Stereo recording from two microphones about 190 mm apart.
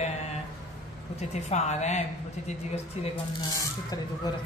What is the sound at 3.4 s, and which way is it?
Speech, 20° left (ahead or behind).